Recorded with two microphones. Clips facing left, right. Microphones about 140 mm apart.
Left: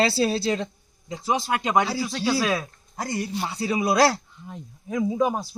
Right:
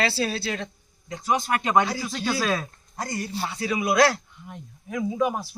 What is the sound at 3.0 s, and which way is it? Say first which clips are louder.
Speech: left 2 dB; 25° left (ahead or behind).